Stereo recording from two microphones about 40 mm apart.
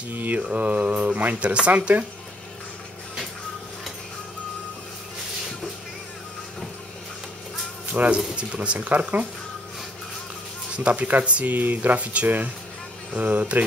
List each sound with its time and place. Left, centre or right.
0.1 s mantra: right
0.5 s speech: right
7.9 s speech: right
10.8 s speech: right
11.5 s speech: right